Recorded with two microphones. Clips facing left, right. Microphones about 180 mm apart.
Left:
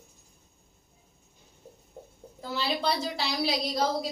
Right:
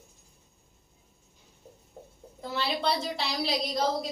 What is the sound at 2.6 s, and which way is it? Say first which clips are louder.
Speech: even; centre (ahead or behind).